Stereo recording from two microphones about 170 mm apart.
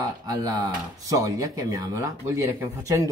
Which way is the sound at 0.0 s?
20° right (ahead or behind).